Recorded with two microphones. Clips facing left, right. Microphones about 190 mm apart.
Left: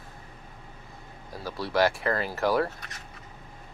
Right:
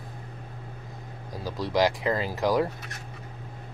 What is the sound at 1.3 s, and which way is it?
Speech, 15° right (ahead or behind).